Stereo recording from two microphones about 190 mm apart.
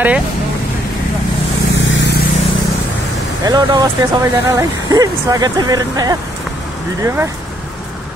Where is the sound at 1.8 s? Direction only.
70° left (ahead or behind).